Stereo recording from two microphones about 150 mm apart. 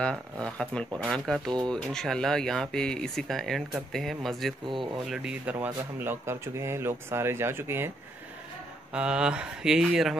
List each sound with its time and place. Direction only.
0.0 s speech: 5° left (ahead or behind); by 7.9 s 15° right (ahead or behind)
8.9 s speech: 5° right (ahead or behind)